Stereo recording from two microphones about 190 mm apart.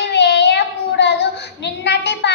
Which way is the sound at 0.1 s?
65° left (ahead or behind).